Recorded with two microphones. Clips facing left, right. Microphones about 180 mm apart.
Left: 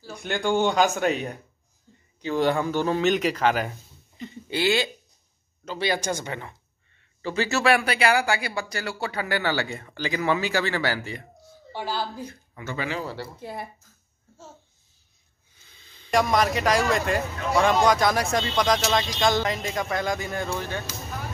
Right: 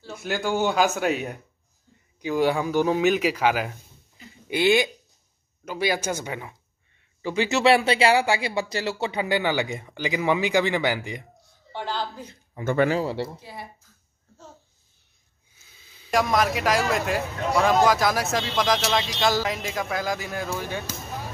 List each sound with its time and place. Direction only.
0.0 s speech: 5° right (ahead or behind)
4.5 s speech: 15° right (ahead or behind)
11.7 s speech: 10° left (ahead or behind)
12.6 s speech: 50° right (ahead or behind)
13.0 s speech: 25° right (ahead or behind)
13.4 s speech: 55° left (ahead or behind)
15.5 s speech: 5° right (ahead or behind)